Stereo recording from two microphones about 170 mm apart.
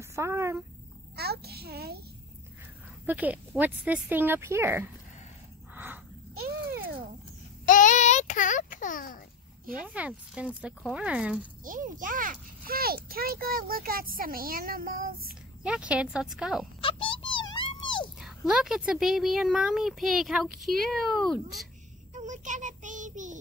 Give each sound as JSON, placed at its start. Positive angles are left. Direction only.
{"t": 0.0, "sound": "speech", "side_deg": -15}
{"t": 1.1, "sound": "a child's voice", "side_deg": -70}
{"t": 3.1, "sound": "speech", "side_deg": -10}
{"t": 6.3, "sound": "a sound", "side_deg": -60}
{"t": 7.6, "sound": "child singing", "side_deg": 50}
{"t": 9.8, "sound": "speech", "side_deg": -5}
{"t": 11.6, "sound": "a child's voice", "side_deg": -50}
{"t": 15.6, "sound": "speech", "side_deg": -5}
{"t": 16.8, "sound": "dog", "side_deg": 30}
{"t": 18.2, "sound": "speech", "side_deg": 0}
{"t": 22.1, "sound": "child singing", "side_deg": -45}